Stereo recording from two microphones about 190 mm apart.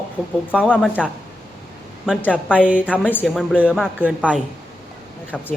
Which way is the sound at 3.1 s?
5° left (ahead or behind).